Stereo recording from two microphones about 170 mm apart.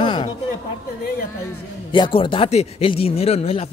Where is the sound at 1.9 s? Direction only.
30° left (ahead or behind).